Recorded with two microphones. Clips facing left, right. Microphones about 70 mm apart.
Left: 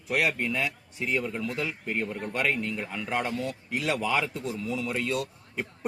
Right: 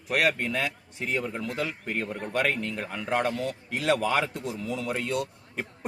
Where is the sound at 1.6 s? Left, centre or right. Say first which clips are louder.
Right 2 dB; right.